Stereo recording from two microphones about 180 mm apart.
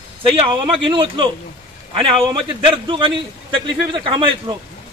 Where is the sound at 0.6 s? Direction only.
30° right (ahead or behind).